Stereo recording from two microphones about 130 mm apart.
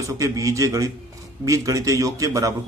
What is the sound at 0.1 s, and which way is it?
A man's voice, 25° right (ahead or behind).